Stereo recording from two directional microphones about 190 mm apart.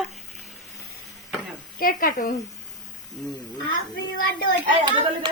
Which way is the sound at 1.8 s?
50° left (ahead or behind).